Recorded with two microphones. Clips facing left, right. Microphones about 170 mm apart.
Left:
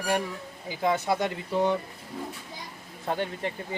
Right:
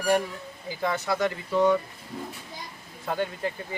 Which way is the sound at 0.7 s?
15° left (ahead or behind).